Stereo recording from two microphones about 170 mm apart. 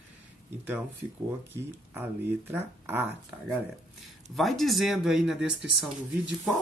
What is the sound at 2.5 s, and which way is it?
Speech, 10° right (ahead or behind).